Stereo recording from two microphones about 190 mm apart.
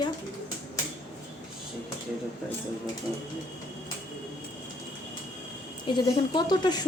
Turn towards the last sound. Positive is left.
turn(degrees=20)  # may be behind; listen again after turning